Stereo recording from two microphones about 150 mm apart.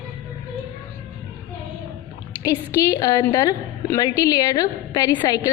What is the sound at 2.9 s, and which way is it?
A woman's voice, 25° left (ahead or behind).